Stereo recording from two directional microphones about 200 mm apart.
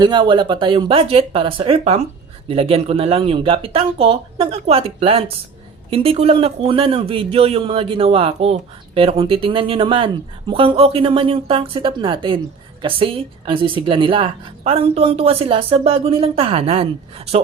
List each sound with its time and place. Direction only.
0.0 s a woman's voice: 20° right (ahead or behind)